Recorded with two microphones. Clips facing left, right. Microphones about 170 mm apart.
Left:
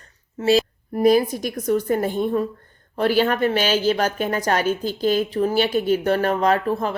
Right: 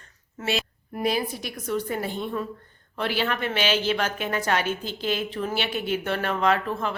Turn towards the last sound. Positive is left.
turn(degrees=40)  # may be behind; listen again after turning